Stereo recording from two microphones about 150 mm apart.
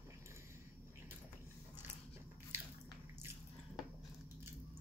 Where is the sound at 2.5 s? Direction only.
15° right (ahead or behind).